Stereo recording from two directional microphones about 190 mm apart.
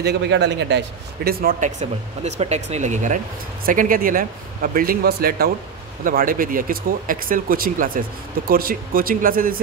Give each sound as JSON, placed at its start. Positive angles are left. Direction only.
{"t": 0.0, "sound": "a man's voice", "side_deg": -60}